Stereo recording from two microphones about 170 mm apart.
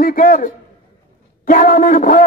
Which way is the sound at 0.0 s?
55° left (ahead or behind).